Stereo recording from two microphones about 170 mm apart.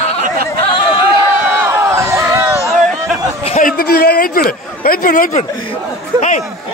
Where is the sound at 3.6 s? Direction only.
60° left (ahead or behind).